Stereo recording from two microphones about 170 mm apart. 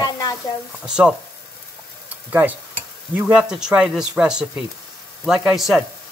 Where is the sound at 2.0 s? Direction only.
10° right (ahead or behind).